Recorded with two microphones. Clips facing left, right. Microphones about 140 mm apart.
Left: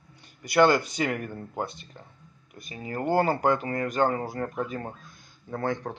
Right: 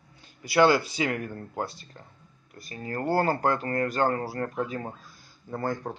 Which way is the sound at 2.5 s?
20° left (ahead or behind).